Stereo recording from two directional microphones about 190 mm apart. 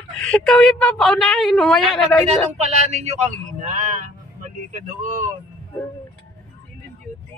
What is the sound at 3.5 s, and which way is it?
Vehicle, 45° right (ahead or behind).